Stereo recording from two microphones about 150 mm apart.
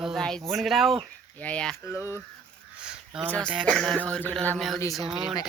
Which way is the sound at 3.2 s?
10° left (ahead or behind).